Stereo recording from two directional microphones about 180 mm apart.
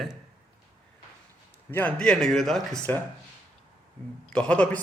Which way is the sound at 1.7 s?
10° left (ahead or behind).